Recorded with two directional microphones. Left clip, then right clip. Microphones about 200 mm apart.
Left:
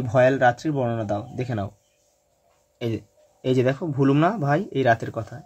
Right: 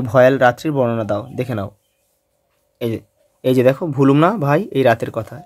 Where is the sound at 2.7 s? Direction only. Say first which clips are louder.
Right 6 dB; 25° right (ahead or behind).